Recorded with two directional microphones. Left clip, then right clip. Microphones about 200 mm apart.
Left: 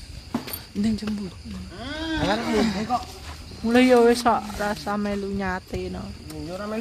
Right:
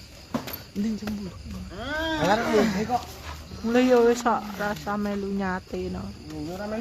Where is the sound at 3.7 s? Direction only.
20° left (ahead or behind).